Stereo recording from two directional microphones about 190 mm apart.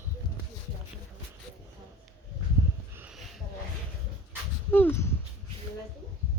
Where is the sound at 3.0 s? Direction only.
5° right (ahead or behind).